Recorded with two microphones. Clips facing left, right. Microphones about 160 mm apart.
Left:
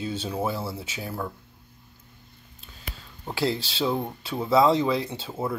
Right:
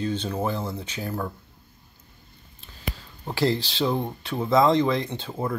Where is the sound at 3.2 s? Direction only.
Centre (ahead or behind).